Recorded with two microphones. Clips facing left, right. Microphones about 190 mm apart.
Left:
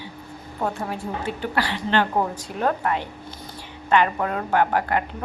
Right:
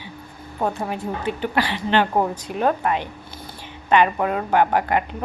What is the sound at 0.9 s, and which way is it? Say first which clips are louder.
A woman's voice: right 3 dB; 20° right (ahead or behind).